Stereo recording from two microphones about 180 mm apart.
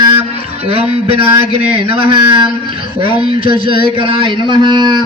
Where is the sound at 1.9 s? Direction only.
25° right (ahead or behind).